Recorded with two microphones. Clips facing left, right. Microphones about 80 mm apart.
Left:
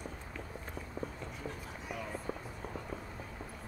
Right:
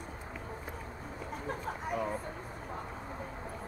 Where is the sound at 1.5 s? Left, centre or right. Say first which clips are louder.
Right 8 dB; right.